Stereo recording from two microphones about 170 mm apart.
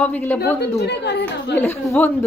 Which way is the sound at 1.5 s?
15° left (ahead or behind).